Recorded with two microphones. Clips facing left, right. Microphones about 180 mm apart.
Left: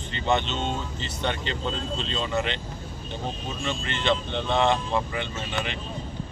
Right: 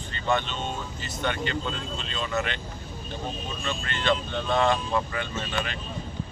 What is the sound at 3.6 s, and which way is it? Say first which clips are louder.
Speech: left 1 dB; 20° left (ahead or behind).